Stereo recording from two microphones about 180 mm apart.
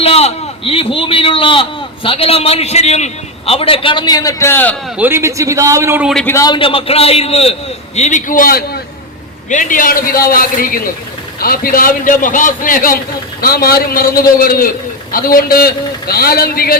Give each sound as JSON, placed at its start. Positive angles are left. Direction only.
{"t": 0.0, "sound": "a sound", "side_deg": 35}
{"t": 2.0, "sound": "a man's voice", "side_deg": 30}
{"t": 4.9, "sound": "a man's voice", "side_deg": -10}
{"t": 6.2, "sound": "a man's voice", "side_deg": 20}
{"t": 9.5, "sound": "a man's voice", "side_deg": 45}